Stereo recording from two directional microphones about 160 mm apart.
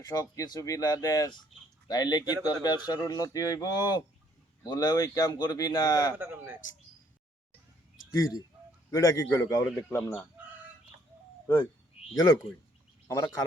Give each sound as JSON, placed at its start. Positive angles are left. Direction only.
{"t": 0.0, "sound": "speech", "side_deg": 20}
{"t": 6.1, "sound": "speech", "side_deg": -15}
{"t": 8.1, "sound": "speech", "side_deg": 20}
{"t": 11.4, "sound": "speech", "side_deg": 25}
{"t": 13.1, "sound": "speech", "side_deg": 20}